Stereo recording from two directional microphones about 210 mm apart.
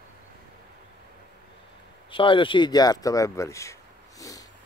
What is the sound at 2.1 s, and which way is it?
Speech, 25° left (ahead or behind).